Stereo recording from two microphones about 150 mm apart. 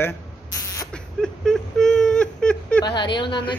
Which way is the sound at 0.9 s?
5° left (ahead or behind).